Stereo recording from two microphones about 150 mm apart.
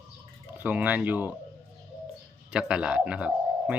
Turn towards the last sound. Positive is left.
turn(degrees=-10)  # may be behind; listen again after turning